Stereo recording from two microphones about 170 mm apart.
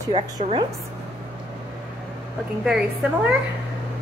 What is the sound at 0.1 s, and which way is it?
Speech, 35° right (ahead or behind).